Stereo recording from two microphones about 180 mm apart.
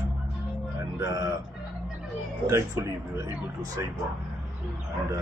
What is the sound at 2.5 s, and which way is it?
Speech, 15° right (ahead or behind).